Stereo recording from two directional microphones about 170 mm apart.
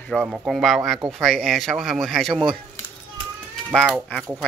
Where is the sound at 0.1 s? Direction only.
Centre (ahead or behind).